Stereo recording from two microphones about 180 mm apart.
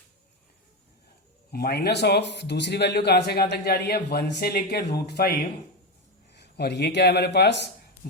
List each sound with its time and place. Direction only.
1.5 s a man's voice: 60° left (ahead or behind)
6.3 s speech: 70° left (ahead or behind)